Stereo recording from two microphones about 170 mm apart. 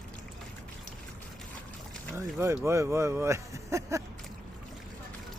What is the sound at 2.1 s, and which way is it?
Boat, 15° right (ahead or behind).